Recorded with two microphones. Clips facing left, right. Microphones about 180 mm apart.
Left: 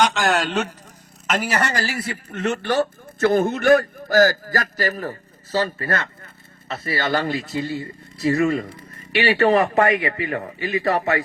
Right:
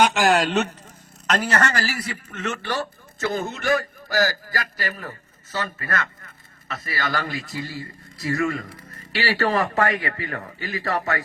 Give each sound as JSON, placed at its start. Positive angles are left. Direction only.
{"t": 0.0, "sound": "a man's voice", "side_deg": -15}
{"t": 0.3, "sound": "a man's voice", "side_deg": 0}
{"t": 1.7, "sound": "speech", "side_deg": 25}
{"t": 2.3, "sound": "a man's voice", "side_deg": 45}